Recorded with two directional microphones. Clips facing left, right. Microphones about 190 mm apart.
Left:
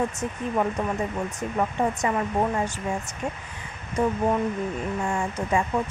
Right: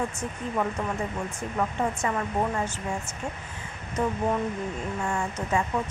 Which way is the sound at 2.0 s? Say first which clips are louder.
Left 3 dB; 20° left (ahead or behind).